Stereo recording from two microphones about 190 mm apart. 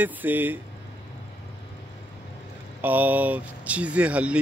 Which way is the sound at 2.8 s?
10° right (ahead or behind).